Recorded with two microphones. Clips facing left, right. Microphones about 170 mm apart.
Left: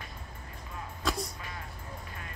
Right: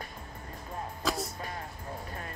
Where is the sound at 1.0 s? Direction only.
Centre (ahead or behind).